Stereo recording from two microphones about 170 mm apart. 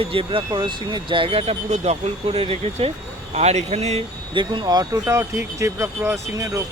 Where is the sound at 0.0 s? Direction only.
30° right (ahead or behind).